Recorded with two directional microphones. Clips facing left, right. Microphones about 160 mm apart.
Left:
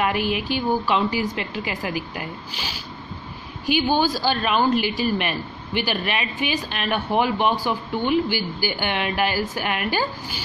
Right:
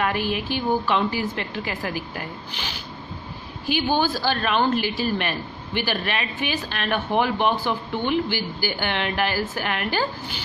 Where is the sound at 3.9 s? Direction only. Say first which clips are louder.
Right 1 dB; 15° left (ahead or behind).